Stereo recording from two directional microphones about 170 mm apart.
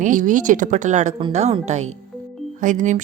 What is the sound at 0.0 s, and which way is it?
Speech, 50° right (ahead or behind).